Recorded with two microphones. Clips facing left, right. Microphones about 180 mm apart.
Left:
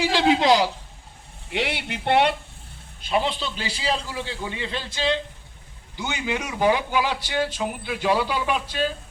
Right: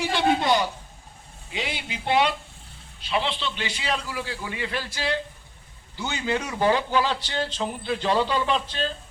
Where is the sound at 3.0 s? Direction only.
45° left (ahead or behind).